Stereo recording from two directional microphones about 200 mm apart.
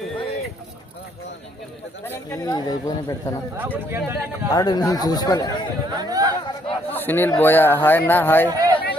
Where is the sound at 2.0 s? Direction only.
15° left (ahead or behind).